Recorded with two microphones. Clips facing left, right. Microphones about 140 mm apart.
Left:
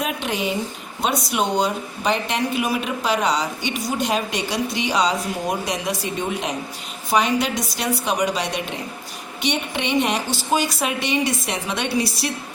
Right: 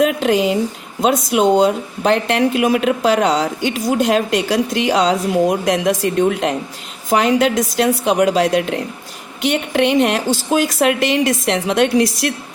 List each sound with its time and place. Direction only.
0.0 s speech: 90° right
2.0 s speech: 90° right